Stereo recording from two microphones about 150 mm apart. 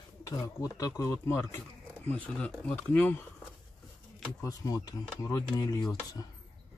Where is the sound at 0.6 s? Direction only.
20° left (ahead or behind).